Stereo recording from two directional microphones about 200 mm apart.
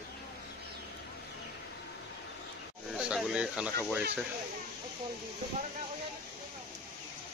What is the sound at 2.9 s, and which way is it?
Speech, centre (ahead or behind).